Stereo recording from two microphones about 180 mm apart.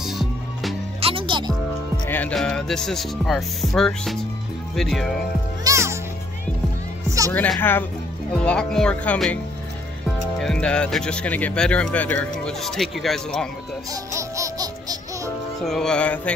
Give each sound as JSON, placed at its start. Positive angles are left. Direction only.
{"t": 0.0, "sound": "music", "side_deg": 0}
{"t": 1.0, "sound": "music", "side_deg": -30}
{"t": 2.0, "sound": "speech", "side_deg": 10}
{"t": 5.6, "sound": "music", "side_deg": -15}
{"t": 7.1, "sound": "music", "side_deg": -20}
{"t": 7.3, "sound": "speech", "side_deg": 10}
{"t": 10.4, "sound": "speech", "side_deg": 5}
{"t": 14.1, "sound": "music", "side_deg": -15}
{"t": 15.6, "sound": "speech", "side_deg": 0}